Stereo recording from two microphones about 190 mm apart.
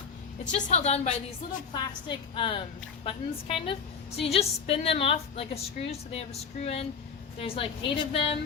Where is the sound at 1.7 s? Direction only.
25° left (ahead or behind).